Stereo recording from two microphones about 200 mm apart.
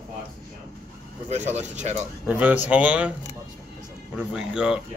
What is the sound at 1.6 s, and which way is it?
Speech, 35° right (ahead or behind).